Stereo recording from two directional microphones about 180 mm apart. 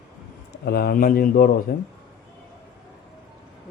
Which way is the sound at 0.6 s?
60° left (ahead or behind).